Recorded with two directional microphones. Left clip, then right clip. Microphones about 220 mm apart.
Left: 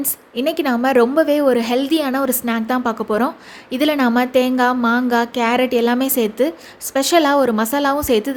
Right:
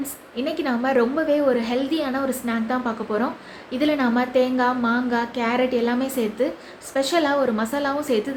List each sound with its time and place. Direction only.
0.0 s a woman's voice: 50° left (ahead or behind)